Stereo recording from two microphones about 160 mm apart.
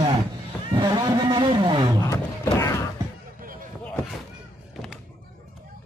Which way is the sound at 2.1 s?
20° left (ahead or behind).